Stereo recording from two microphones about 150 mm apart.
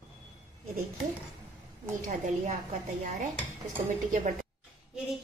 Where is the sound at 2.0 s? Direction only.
60° right (ahead or behind).